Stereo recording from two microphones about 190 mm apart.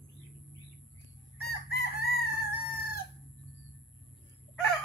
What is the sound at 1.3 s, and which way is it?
Chicken, 55° left (ahead or behind).